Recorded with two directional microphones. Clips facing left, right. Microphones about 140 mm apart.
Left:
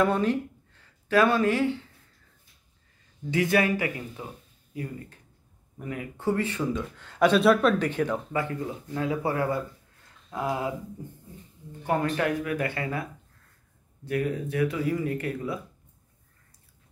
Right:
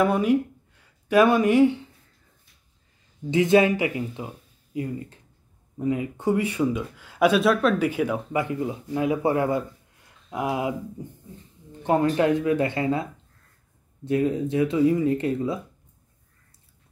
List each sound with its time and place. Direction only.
0.0 s speech: 10° right (ahead or behind)
3.3 s speech: 20° right (ahead or behind)
11.8 s speech: 25° right (ahead or behind)